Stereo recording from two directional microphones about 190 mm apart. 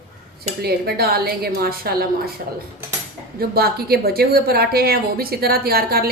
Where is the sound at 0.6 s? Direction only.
55° right (ahead or behind).